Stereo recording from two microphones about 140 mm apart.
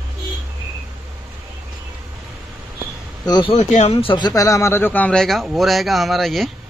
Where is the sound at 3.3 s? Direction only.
35° left (ahead or behind).